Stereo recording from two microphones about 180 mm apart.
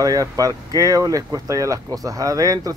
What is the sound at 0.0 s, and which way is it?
Speech, 20° right (ahead or behind).